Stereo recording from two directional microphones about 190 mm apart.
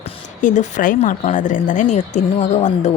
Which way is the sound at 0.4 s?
45° left (ahead or behind).